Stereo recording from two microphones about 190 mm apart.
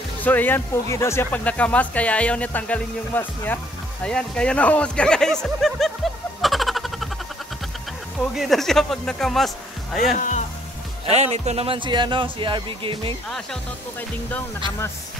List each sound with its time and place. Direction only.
0.2 s speech: 10° left (ahead or behind)
6.4 s a sound: centre (ahead or behind)
8.2 s speech: centre (ahead or behind)
10.1 s speech: 40° left (ahead or behind)
11.1 s speech: 35° right (ahead or behind)